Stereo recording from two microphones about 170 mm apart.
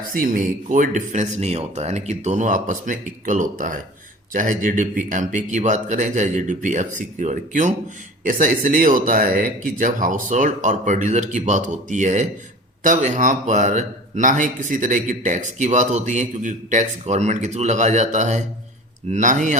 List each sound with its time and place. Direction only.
0.1 s speech: 55° right (ahead or behind)